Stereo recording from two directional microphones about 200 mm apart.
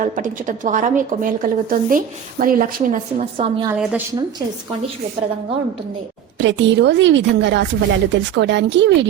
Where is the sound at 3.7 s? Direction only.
10° right (ahead or behind).